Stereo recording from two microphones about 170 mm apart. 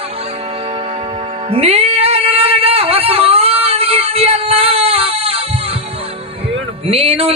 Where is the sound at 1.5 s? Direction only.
35° right (ahead or behind).